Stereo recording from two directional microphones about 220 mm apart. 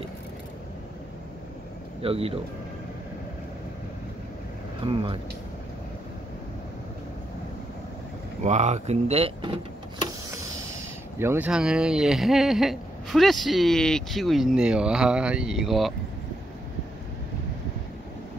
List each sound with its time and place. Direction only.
2.0 s speech: 25° right (ahead or behind)
4.8 s speech: 25° right (ahead or behind)
8.5 s speech: 30° right (ahead or behind)
11.1 s speech: 10° right (ahead or behind)